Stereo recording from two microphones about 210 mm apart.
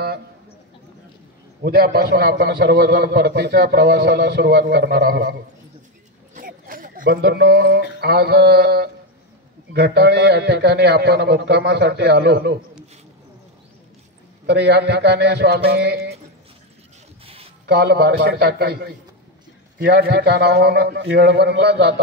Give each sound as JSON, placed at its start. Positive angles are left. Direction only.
{"t": 1.6, "sound": "a man's voice", "side_deg": -45}
{"t": 6.3, "sound": "a sound", "side_deg": -40}
{"t": 8.0, "sound": "a man's voice", "side_deg": -50}
{"t": 14.4, "sound": "a man's voice", "side_deg": -55}
{"t": 17.6, "sound": "a man's voice", "side_deg": -50}